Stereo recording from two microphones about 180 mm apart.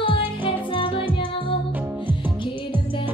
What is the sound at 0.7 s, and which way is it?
Music, 30° left (ahead or behind).